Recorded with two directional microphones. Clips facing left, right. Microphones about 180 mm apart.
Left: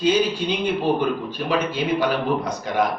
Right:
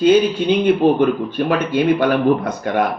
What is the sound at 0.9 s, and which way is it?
A man's voice, 55° right (ahead or behind).